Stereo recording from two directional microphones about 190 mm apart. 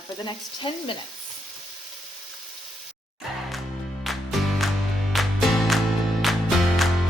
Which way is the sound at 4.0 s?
Centre (ahead or behind).